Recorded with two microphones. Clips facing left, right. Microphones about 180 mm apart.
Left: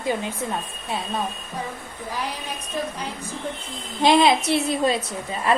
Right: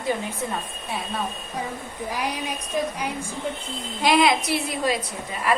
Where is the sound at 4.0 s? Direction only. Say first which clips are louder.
Left 3 dB; 25° left (ahead or behind).